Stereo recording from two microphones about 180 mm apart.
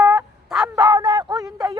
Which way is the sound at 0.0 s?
10° right (ahead or behind).